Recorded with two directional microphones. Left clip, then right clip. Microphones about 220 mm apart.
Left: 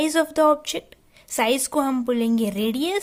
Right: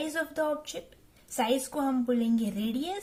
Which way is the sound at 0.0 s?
40° left (ahead or behind).